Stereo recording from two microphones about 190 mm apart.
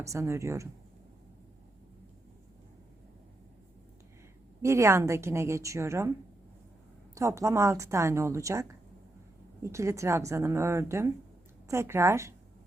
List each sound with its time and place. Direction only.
0.0 s a woman's voice: 15° right (ahead or behind)
4.6 s a woman's voice: 15° right (ahead or behind)
7.2 s a woman's voice: 15° right (ahead or behind)
9.6 s a woman's voice: 15° right (ahead or behind)